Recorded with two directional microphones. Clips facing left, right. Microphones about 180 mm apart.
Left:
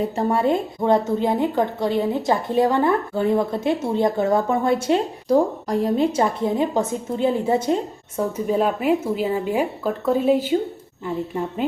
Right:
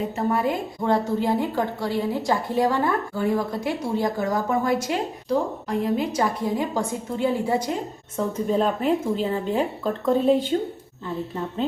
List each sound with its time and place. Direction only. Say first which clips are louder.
0.3 s a woman's voice: left 3 dB; 25° left (ahead or behind)
5.3 s a woman's voice: left 6 dB; 40° left (ahead or behind)
6.1 s a woman's voice: left 3 dB; 25° left (ahead or behind)
8.1 s speech: left 2 dB; 10° left (ahead or behind)